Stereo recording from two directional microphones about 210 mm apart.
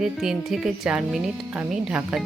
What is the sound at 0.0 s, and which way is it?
Speech, centre (ahead or behind).